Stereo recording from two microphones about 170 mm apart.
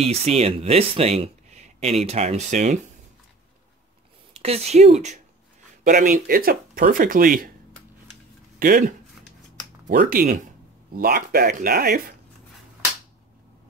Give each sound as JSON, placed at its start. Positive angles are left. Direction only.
{"t": 0.0, "sound": "speech", "side_deg": -35}
{"t": 4.3, "sound": "speech", "side_deg": -35}
{"t": 8.5, "sound": "speech", "side_deg": -55}